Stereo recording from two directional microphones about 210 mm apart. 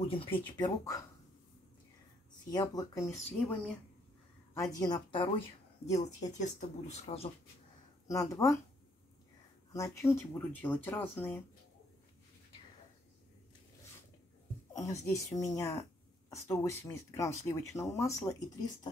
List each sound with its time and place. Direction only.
0.0 s speech: 25° left (ahead or behind)
2.5 s a woman's voice: 20° left (ahead or behind)
4.7 s speech: 20° left (ahead or behind)
5.9 s speech: 35° left (ahead or behind)
8.1 s a woman's voice: 15° left (ahead or behind)
9.7 s a woman's voice: 15° left (ahead or behind)
14.8 s a woman's voice: 15° left (ahead or behind)